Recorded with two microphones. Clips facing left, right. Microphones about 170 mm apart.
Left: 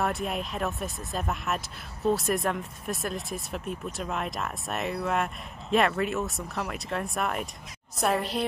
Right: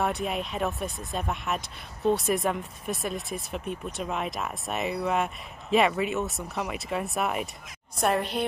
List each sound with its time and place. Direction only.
0.0 s speech: centre (ahead or behind)